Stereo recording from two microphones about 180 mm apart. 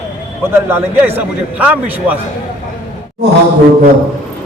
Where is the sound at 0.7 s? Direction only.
10° right (ahead or behind).